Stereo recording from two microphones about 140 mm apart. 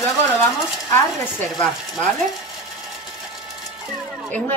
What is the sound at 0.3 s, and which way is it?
Speech, 20° left (ahead or behind).